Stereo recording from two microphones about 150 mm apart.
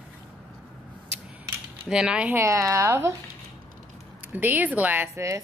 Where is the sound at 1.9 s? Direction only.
5° right (ahead or behind).